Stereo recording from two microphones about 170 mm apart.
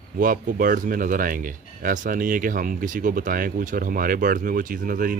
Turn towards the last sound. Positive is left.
turn(degrees=-55)  # may be behind; listen again after turning